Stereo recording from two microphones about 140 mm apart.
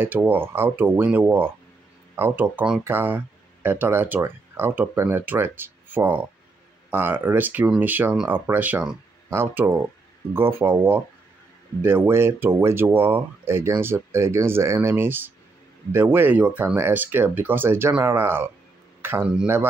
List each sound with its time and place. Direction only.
0.0 s a man's voice: 15° right (ahead or behind)